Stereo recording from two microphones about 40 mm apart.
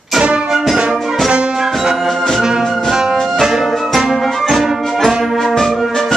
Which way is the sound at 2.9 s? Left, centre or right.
Centre.